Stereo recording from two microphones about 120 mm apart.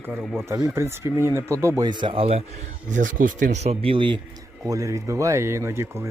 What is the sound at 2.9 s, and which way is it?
Speech, 90° right.